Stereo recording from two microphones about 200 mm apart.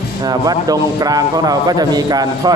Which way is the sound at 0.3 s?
20° right (ahead or behind).